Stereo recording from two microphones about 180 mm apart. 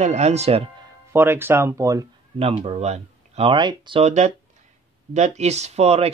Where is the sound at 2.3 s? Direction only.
35° right (ahead or behind).